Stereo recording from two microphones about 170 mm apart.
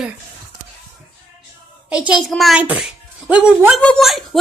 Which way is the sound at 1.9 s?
5° right (ahead or behind).